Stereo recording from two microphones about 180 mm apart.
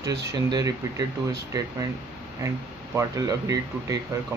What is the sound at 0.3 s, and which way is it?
Speech, 20° right (ahead or behind).